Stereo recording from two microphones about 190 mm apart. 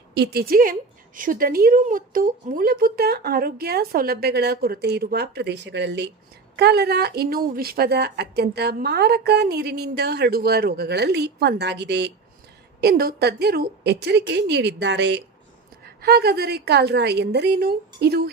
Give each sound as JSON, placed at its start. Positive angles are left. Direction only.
{"t": 0.1, "sound": "a woman's voice", "side_deg": -60}